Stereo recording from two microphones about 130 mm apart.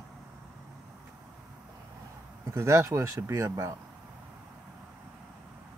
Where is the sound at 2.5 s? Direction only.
20° right (ahead or behind).